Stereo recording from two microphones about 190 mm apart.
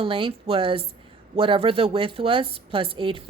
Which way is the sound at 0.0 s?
30° right (ahead or behind).